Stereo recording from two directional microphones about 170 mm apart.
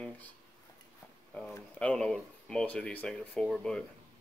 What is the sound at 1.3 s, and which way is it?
Speech, 5° left (ahead or behind).